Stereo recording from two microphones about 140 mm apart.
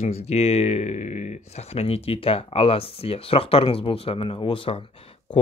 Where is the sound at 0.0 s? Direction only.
50° left (ahead or behind).